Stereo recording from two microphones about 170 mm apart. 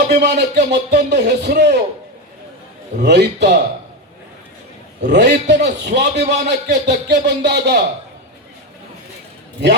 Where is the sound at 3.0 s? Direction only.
85° right.